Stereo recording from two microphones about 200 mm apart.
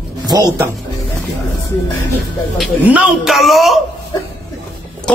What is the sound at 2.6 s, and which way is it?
A man's voice, 5° right (ahead or behind).